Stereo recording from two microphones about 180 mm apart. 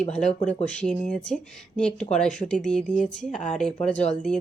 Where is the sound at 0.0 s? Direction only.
40° left (ahead or behind).